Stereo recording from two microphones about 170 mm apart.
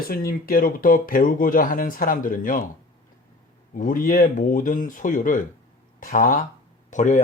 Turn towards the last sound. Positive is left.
turn(degrees=45)  # may be behind; listen again after turning